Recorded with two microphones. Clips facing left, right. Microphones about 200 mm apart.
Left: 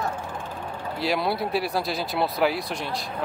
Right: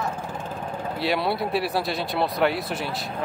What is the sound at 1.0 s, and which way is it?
Speech, centre (ahead or behind).